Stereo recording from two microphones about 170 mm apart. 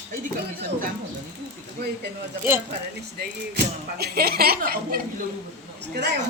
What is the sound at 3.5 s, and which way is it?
Speech, 70° right (ahead or behind).